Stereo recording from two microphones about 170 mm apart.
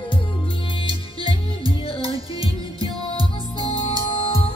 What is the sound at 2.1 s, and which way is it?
Music, 20° right (ahead or behind).